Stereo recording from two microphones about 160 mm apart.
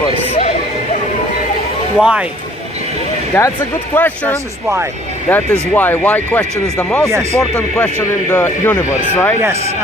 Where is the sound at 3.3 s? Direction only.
15° left (ahead or behind).